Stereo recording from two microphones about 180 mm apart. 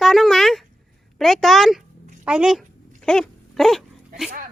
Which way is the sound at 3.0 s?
5° left (ahead or behind).